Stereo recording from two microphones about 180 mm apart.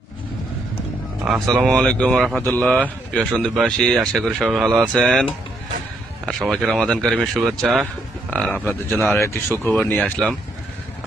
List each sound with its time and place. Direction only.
1.2 s speech: centre (ahead or behind)